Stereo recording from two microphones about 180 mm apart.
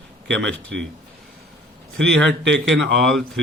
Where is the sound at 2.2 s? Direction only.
80° right.